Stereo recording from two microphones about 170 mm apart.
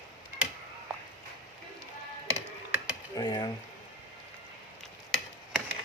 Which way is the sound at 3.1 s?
25° left (ahead or behind).